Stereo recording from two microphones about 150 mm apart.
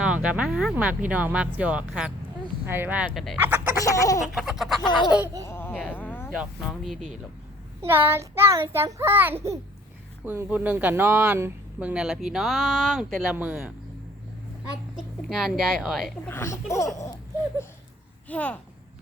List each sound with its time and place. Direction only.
0.0 s speech: 5° right (ahead or behind)
3.8 s a sound: 20° left (ahead or behind)
4.4 s speech: centre (ahead or behind)
5.4 s a sound: 15° left (ahead or behind)
6.0 s snake: 15° left (ahead or behind)
6.3 s speech: 5° right (ahead or behind)
7.8 s speech: 15° right (ahead or behind); by 13.1 s centre (ahead or behind)
13.3 s speech: 10° right (ahead or behind)
14.9 s speech: centre (ahead or behind)
16.3 s a sound: 20° left (ahead or behind)
16.7 s speech: 20° left (ahead or behind)
18.3 s a child's voice: 10° left (ahead or behind)